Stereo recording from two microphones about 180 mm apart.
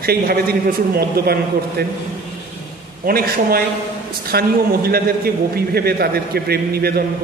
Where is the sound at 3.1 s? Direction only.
55° right (ahead or behind).